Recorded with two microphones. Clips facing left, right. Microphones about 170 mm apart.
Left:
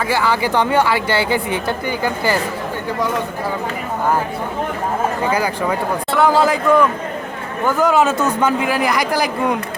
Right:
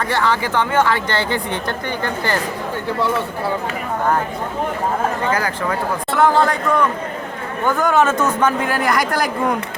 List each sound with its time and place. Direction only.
0.0 s speech: 5° left (ahead or behind)
5.2 s speech: 10° left (ahead or behind)